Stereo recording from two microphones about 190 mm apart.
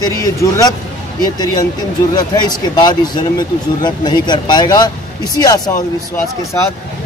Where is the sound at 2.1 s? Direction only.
20° left (ahead or behind).